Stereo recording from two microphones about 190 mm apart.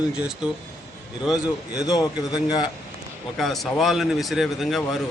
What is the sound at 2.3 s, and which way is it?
Speech, 20° left (ahead or behind).